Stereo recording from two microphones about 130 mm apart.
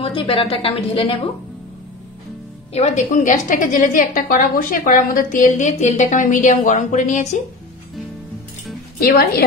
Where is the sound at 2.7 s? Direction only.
55° left (ahead or behind).